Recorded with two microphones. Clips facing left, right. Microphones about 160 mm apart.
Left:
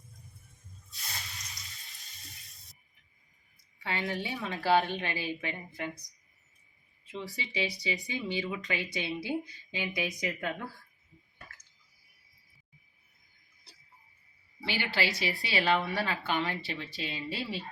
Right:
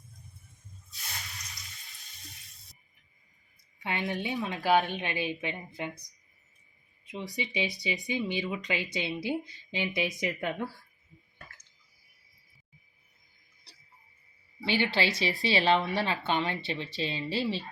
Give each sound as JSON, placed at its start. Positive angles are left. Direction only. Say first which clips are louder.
{"t": 3.8, "sound": "speech", "louder": "right 1 dB", "side_deg": -20}
{"t": 7.0, "sound": "speech", "louder": "right 3 dB", "side_deg": -15}
{"t": 14.6, "sound": "a woman's voice", "louder": "right 4 dB", "side_deg": -20}